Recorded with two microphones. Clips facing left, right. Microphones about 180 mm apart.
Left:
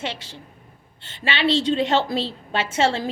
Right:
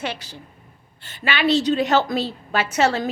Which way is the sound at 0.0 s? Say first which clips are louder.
Right 2 dB; 25° left (ahead or behind).